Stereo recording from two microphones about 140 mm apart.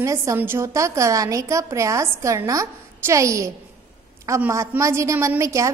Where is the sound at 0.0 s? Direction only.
20° right (ahead or behind).